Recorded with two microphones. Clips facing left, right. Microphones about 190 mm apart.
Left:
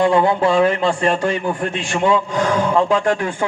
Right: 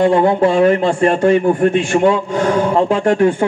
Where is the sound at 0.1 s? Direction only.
50° right (ahead or behind).